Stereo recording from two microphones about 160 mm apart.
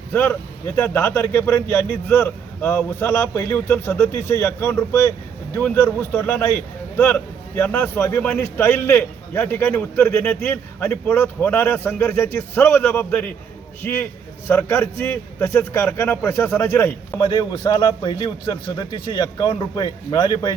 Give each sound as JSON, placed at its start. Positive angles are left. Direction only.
{"t": 0.1, "sound": "a man's voice", "side_deg": 15}
{"t": 17.2, "sound": "a man's voice", "side_deg": 30}